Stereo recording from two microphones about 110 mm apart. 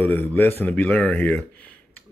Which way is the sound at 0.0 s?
15° left (ahead or behind).